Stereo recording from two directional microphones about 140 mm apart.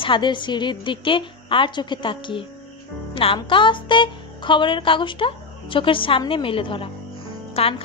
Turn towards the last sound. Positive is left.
turn(degrees=45)  # may be behind; listen again after turning